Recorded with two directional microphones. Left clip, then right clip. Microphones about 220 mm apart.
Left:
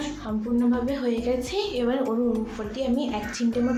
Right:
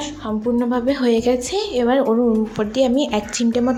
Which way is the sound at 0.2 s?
35° right (ahead or behind).